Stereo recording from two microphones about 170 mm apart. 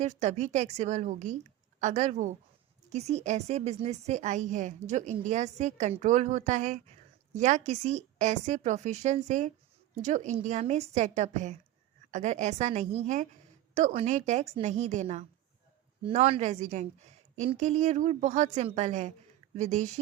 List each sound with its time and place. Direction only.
0.0 s a woman's voice: 40° right (ahead or behind)